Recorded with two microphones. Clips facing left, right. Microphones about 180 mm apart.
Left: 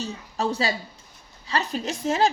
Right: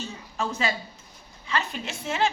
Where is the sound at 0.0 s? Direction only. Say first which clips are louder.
Left 4 dB; 35° left (ahead or behind).